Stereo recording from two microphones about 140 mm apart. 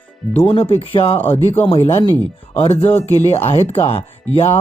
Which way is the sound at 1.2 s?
15° left (ahead or behind).